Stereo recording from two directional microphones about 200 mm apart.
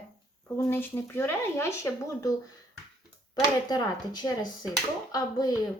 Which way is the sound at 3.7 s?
20° left (ahead or behind).